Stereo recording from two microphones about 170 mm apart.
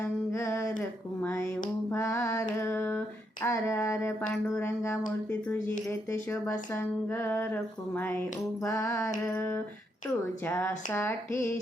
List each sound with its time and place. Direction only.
0.0 s a sound: 15° left (ahead or behind)
0.8 s speech: 10° left (ahead or behind)
6.3 s speech: 15° left (ahead or behind)